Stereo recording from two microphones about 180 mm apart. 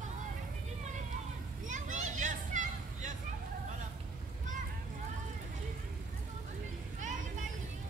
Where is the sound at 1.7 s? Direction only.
45° right (ahead or behind).